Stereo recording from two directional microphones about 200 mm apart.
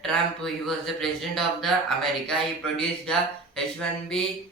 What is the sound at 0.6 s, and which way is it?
Speech, centre (ahead or behind).